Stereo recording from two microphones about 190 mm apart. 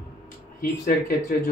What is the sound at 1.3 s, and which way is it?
Speech, 50° left (ahead or behind).